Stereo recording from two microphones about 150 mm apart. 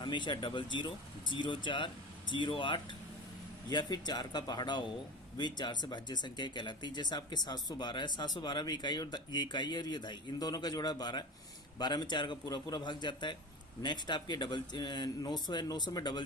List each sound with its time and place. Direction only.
0.0 s speech: 30° left (ahead or behind)